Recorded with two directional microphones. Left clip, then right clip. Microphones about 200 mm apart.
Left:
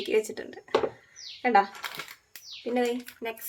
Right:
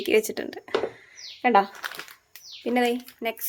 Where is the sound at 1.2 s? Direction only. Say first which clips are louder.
Right 3 dB; 40° right (ahead or behind).